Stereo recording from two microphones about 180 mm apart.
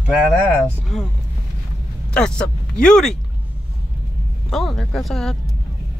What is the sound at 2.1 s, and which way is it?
Speech, 5° left (ahead or behind).